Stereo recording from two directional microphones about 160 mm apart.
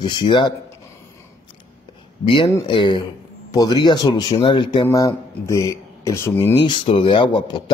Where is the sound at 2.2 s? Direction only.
30° left (ahead or behind).